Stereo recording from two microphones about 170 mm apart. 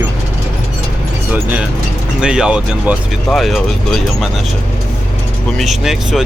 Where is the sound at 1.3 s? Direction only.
10° right (ahead or behind).